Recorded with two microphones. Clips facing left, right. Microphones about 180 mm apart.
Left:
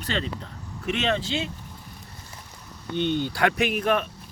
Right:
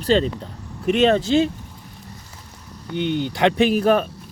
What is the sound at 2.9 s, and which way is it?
Speech, 15° right (ahead or behind).